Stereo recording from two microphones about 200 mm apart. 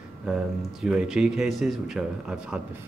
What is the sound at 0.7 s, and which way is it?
Speech, 5° right (ahead or behind).